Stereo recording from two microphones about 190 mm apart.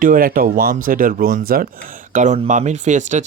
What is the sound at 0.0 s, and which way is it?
Speech, 50° right (ahead or behind).